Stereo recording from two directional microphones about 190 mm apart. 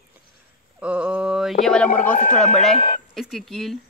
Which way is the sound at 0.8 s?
5° right (ahead or behind).